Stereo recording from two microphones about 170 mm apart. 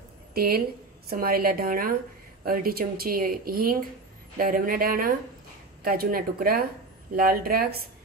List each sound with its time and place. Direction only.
0.3 s speech: 60° right (ahead or behind)